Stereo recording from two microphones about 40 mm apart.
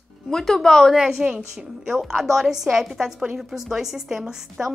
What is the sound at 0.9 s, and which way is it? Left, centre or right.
A woman's voice, centre.